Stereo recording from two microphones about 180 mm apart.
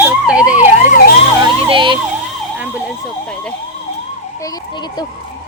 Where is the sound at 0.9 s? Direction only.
55° left (ahead or behind).